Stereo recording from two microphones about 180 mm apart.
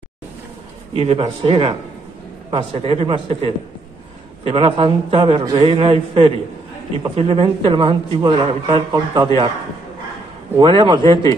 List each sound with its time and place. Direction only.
0.9 s a man's voice: 30° right (ahead or behind)
10.6 s a man's voice: 25° right (ahead or behind)